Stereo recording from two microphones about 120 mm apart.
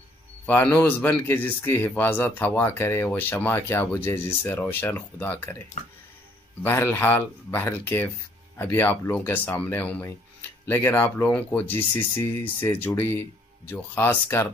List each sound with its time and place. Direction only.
0.5 s a man's voice: 15° left (ahead or behind)
6.6 s a man's voice: 20° left (ahead or behind)